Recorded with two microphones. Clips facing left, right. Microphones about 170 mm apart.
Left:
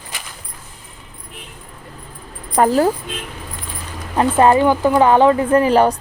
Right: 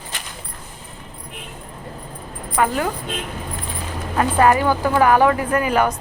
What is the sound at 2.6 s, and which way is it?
Speech, 35° left (ahead or behind).